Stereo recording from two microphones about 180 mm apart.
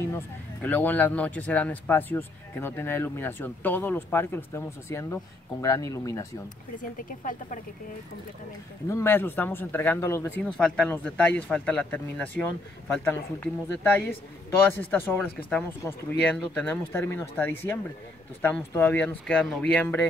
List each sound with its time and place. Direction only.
0.1 s speech: 10° left (ahead or behind)
6.8 s speech: 50° left (ahead or behind)
8.8 s speech: 15° left (ahead or behind)
14.8 s speech: 10° left (ahead or behind)